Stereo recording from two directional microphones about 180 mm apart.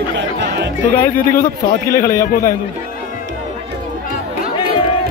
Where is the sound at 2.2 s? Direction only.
50° left (ahead or behind).